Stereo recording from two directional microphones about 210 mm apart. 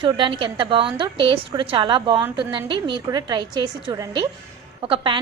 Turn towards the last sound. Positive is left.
turn(degrees=-25)  # may be behind; listen again after turning